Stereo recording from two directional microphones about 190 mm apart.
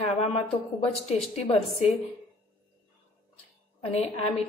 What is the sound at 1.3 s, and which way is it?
Speech, 35° left (ahead or behind).